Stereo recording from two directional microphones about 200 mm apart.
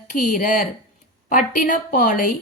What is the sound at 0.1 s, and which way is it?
Speech, 40° left (ahead or behind).